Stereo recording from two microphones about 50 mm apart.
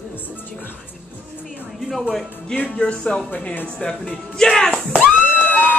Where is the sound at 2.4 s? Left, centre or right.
Left.